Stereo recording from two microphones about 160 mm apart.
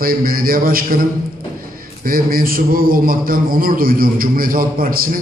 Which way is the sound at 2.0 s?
65° right (ahead or behind).